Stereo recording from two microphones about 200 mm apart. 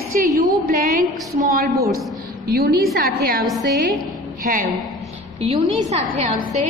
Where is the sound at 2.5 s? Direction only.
50° right (ahead or behind).